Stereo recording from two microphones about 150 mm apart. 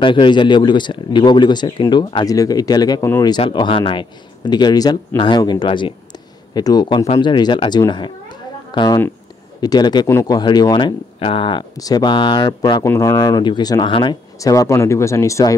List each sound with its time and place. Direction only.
0.0 s speech: 35° left (ahead or behind)
12.8 s speech: 15° left (ahead or behind); by 14.1 s 35° left (ahead or behind)
14.4 s speech: 20° left (ahead or behind)